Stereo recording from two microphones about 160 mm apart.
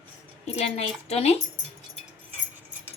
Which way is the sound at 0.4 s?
40° left (ahead or behind).